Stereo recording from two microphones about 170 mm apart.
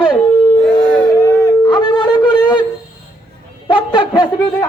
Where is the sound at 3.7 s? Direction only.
30° left (ahead or behind).